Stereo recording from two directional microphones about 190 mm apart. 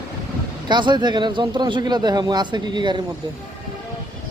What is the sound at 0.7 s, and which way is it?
Speech, 25° right (ahead or behind).